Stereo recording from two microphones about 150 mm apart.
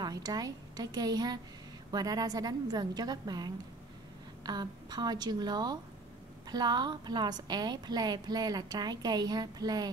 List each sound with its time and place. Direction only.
0.0 s a woman's voice: 25° right (ahead or behind)